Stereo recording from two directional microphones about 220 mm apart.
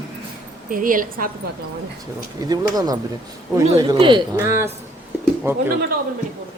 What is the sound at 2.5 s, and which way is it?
Speech, 15° right (ahead or behind).